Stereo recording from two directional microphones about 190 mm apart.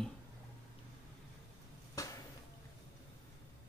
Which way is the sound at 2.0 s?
15° left (ahead or behind).